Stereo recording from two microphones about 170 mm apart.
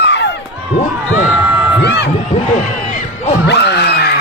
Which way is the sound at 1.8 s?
80° left.